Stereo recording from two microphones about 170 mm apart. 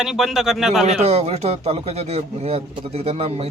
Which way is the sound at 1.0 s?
40° right (ahead or behind).